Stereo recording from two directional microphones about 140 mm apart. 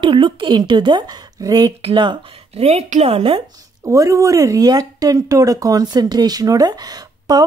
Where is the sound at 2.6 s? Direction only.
50° right (ahead or behind).